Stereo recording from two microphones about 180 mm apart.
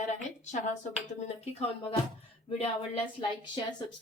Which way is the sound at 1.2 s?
30° left (ahead or behind).